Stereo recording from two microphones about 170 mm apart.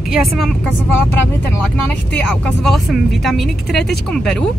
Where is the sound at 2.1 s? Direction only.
5° left (ahead or behind).